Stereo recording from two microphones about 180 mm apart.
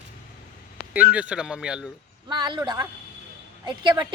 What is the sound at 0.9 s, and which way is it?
Speech, 10° right (ahead or behind).